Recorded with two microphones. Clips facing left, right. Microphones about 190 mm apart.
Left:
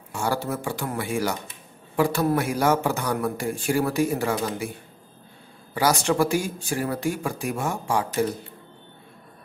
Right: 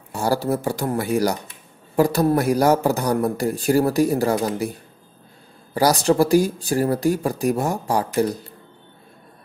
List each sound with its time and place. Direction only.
0.1 s speech: 35° right (ahead or behind)
5.8 s speech: 35° right (ahead or behind)